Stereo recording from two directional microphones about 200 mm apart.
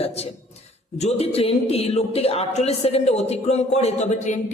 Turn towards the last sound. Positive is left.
turn(degrees=35)  # may be behind; listen again after turning